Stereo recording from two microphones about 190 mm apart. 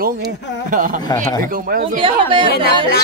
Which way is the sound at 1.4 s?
50° right (ahead or behind).